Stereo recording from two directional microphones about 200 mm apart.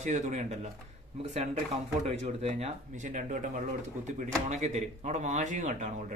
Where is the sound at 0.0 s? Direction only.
35° right (ahead or behind).